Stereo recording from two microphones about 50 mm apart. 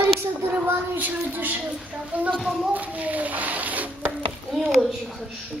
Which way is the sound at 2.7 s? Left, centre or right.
Right.